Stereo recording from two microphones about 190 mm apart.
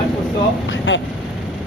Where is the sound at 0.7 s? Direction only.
75° left (ahead or behind).